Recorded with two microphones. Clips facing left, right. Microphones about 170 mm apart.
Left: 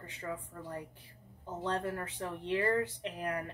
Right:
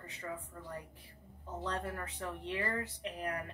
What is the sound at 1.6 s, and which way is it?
Speech, 30° left (ahead or behind).